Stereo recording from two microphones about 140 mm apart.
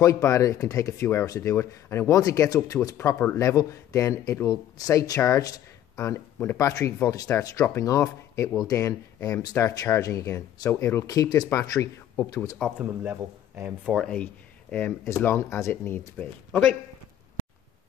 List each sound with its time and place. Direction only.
0.0 s speech: 25° left (ahead or behind)
12.5 s speech: centre (ahead or behind)
13.0 s speech: 15° right (ahead or behind)
13.9 s speech: 5° left (ahead or behind)